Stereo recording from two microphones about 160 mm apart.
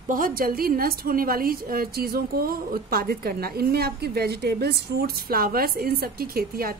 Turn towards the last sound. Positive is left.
turn(degrees=-70)  # may be behind; listen again after turning